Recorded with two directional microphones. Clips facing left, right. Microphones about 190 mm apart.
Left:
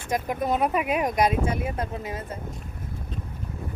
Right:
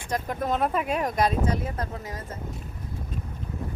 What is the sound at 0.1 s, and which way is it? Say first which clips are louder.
Speech: left 2 dB; 10° left (ahead or behind).